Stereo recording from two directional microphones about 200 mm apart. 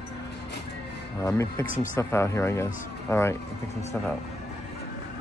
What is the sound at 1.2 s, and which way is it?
Speech, 15° left (ahead or behind).